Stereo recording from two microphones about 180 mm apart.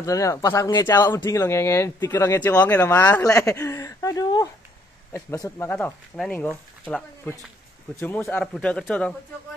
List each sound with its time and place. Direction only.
0.0 s speech: 15° left (ahead or behind)